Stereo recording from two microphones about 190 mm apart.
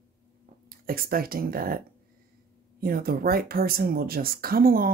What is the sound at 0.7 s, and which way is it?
Speech, 50° right (ahead or behind).